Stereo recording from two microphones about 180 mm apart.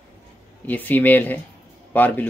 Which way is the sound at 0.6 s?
10° left (ahead or behind).